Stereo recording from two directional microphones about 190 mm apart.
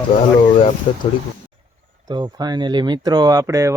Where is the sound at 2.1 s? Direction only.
20° right (ahead or behind).